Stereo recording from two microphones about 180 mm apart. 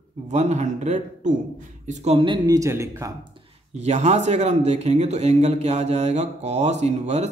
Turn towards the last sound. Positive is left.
turn(degrees=-40)  # may be behind; listen again after turning